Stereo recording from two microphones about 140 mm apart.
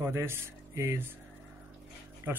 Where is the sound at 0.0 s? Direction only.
15° right (ahead or behind).